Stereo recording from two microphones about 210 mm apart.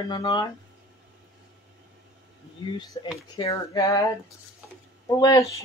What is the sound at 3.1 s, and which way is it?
Speech, 15° left (ahead or behind).